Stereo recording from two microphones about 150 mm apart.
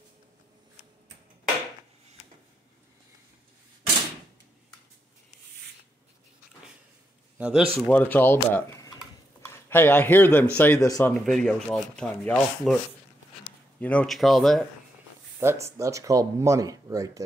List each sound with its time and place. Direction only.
7.3 s a man's voice: 10° right (ahead or behind)
7.8 s speech: 10° left (ahead or behind)
11.0 s sanding: 5° left (ahead or behind)
13.7 s sanding: 10° left (ahead or behind)
15.4 s speech: 20° right (ahead or behind)